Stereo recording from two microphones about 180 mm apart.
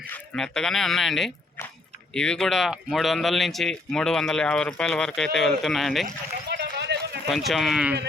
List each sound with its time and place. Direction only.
0.1 s speech: 5° left (ahead or behind)
6.5 s a sound: 70° right (ahead or behind)
7.3 s speech: centre (ahead or behind)